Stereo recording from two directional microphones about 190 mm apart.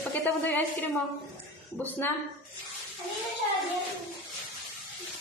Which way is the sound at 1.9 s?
10° left (ahead or behind).